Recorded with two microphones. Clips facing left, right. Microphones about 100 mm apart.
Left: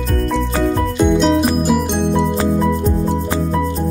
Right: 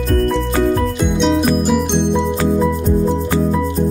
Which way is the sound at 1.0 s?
Centre (ahead or behind).